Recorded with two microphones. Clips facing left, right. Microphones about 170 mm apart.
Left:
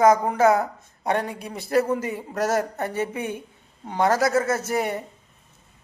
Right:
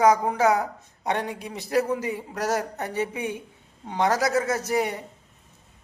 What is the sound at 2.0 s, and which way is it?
Speech, 50° left (ahead or behind).